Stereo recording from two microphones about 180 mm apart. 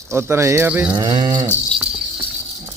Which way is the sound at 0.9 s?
25° right (ahead or behind).